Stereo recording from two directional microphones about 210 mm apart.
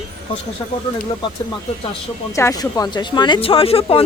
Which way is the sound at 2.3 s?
15° left (ahead or behind).